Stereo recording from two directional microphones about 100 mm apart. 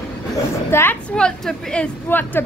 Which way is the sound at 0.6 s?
25° left (ahead or behind).